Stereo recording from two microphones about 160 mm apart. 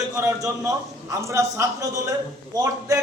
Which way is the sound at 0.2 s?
20° right (ahead or behind).